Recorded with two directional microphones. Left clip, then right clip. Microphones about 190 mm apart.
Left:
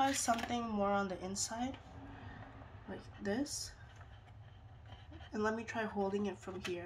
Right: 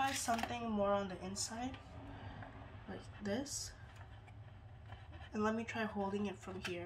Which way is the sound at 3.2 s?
35° left (ahead or behind).